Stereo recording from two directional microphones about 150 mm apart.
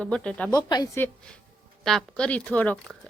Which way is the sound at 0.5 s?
25° left (ahead or behind).